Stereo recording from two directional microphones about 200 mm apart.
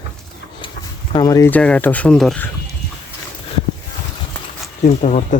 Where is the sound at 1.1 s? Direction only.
15° left (ahead or behind).